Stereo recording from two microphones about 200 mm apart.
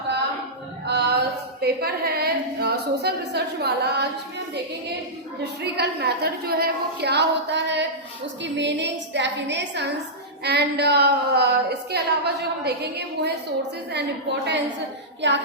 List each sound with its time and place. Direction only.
0.9 s a sound: 55° right (ahead or behind)
1.6 s a woman's voice: 50° right (ahead or behind)
5.4 s a woman's voice: 55° right (ahead or behind)
15.2 s a woman's voice: 65° right (ahead or behind)